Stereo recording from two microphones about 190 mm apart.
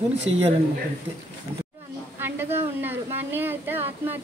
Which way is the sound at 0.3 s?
35° right (ahead or behind).